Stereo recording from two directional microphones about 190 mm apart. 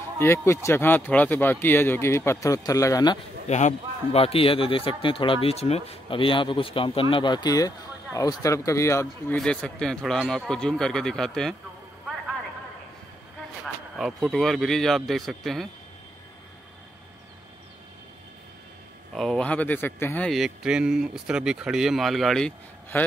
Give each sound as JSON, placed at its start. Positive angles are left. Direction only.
{"t": 0.2, "sound": "speech", "side_deg": 15}
{"t": 3.4, "sound": "speech", "side_deg": 35}
{"t": 9.4, "sound": "speech", "side_deg": 5}
{"t": 13.9, "sound": "speech", "side_deg": 0}
{"t": 19.1, "sound": "speech", "side_deg": 5}